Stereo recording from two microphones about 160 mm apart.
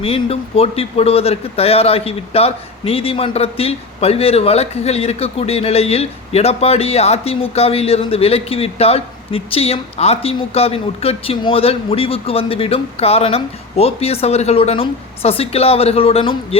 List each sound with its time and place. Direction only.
0.0 s a man's voice: 40° left (ahead or behind)